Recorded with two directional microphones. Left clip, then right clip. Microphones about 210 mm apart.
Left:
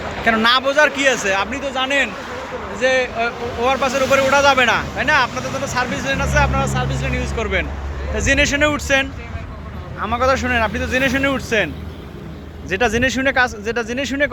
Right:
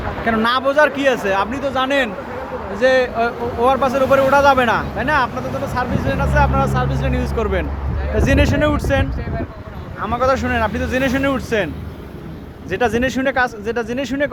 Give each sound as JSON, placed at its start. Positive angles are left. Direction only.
{"t": 0.3, "sound": "speech", "side_deg": -10}
{"t": 12.7, "sound": "speech", "side_deg": -10}